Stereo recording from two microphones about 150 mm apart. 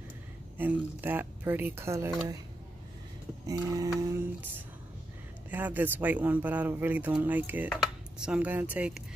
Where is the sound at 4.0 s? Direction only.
15° right (ahead or behind).